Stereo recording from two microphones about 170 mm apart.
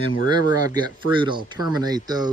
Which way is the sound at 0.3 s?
25° right (ahead or behind).